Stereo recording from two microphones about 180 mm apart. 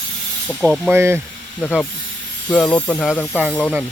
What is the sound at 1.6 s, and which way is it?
Speech, 5° left (ahead or behind).